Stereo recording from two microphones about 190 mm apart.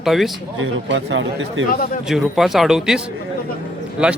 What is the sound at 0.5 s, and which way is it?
Speech, 85° right.